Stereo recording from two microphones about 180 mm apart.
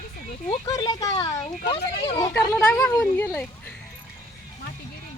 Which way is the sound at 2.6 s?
5° left (ahead or behind).